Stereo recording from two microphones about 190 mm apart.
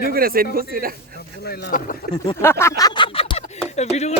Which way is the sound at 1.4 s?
55° left (ahead or behind).